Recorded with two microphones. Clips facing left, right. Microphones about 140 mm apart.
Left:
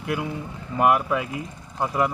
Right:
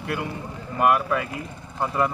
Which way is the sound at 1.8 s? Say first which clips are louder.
Even; 5° left (ahead or behind).